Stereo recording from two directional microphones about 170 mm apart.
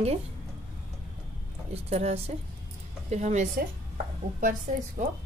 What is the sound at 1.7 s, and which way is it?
A woman's voice, 40° right (ahead or behind).